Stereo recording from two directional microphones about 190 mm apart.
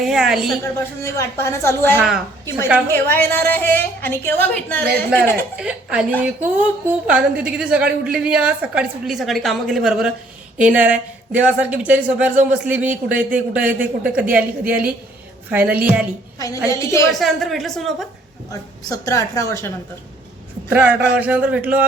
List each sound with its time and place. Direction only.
0.0 s a woman's voice: centre (ahead or behind)
0.6 s a woman's voice: 15° left (ahead or behind)
2.0 s a woman's voice: 5° right (ahead or behind)
2.9 s a woman's voice: 10° left (ahead or behind)
5.5 s a woman's voice: 5° right (ahead or behind)
16.6 s a woman's voice: 15° left (ahead or behind)
17.1 s a woman's voice: centre (ahead or behind)
18.9 s a woman's voice: 15° left (ahead or behind)
20.7 s speech: 10° right (ahead or behind)